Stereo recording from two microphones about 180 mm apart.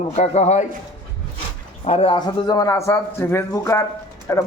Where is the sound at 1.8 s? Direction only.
35° left (ahead or behind).